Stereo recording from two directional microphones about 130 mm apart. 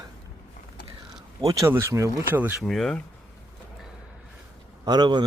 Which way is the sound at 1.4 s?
30° right (ahead or behind).